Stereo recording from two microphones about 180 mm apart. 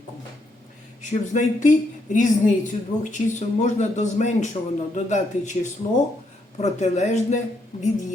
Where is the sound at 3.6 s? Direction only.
40° left (ahead or behind).